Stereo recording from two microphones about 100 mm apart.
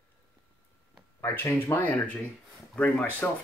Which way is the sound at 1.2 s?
20° left (ahead or behind).